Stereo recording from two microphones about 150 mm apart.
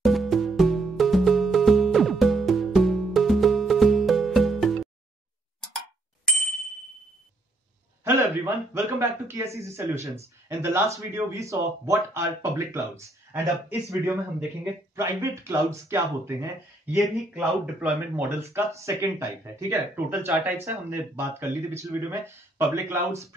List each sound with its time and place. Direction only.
0.0 s music: centre (ahead or behind)
8.0 s a sound: 15° right (ahead or behind)
9.6 s speech: 20° right (ahead or behind)
16.9 s speech: centre (ahead or behind); by 23.2 s 15° right (ahead or behind)